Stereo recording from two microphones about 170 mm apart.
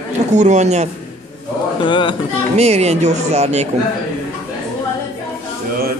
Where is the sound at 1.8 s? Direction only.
30° left (ahead or behind).